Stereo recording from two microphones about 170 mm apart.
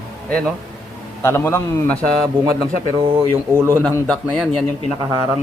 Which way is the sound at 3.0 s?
30° right (ahead or behind).